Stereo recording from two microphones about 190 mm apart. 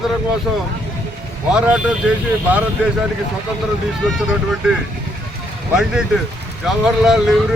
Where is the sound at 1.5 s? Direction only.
5° right (ahead or behind).